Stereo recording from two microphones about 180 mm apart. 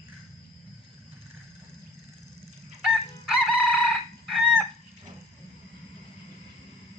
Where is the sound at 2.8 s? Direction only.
Centre (ahead or behind).